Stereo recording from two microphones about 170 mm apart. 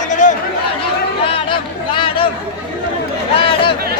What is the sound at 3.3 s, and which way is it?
Chatter, 30° left (ahead or behind).